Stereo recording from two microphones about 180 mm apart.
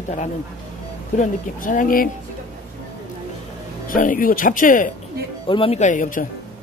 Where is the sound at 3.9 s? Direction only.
50° left (ahead or behind).